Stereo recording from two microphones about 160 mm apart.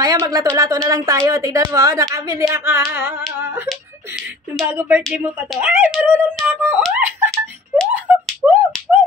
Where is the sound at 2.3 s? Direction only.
15° right (ahead or behind).